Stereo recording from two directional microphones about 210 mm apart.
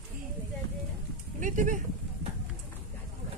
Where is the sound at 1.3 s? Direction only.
35° right (ahead or behind).